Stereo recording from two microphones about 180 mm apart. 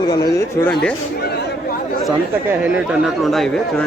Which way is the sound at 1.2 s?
60° left (ahead or behind).